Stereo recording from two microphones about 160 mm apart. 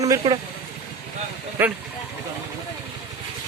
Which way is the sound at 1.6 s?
15° right (ahead or behind).